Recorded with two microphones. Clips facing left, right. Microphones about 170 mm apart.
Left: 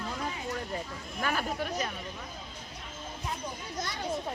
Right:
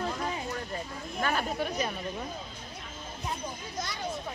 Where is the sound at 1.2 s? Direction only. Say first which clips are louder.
Right 1 dB; 5° left (ahead or behind).